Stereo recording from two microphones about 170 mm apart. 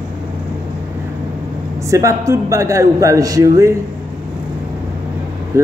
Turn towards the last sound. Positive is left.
turn(degrees=-15)  # may be behind; listen again after turning